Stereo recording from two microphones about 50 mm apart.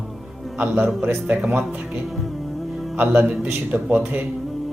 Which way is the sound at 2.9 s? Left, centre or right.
Right.